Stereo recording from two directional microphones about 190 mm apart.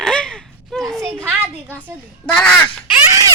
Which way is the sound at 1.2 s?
10° right (ahead or behind).